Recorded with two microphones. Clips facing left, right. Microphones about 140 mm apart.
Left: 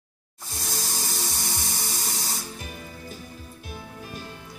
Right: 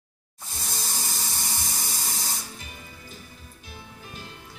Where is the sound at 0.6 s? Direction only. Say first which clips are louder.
Left 3 dB; centre (ahead or behind).